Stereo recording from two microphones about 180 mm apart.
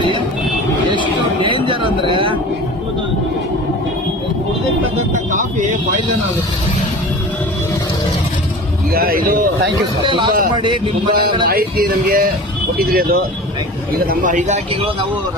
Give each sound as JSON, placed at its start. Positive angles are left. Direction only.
{"t": 0.9, "sound": "vehicle", "side_deg": -25}
{"t": 5.1, "sound": "vehicle", "side_deg": -45}
{"t": 8.9, "sound": "speech", "side_deg": -55}
{"t": 10.0, "sound": "a man's voice", "side_deg": -30}
{"t": 11.4, "sound": "speech", "side_deg": -55}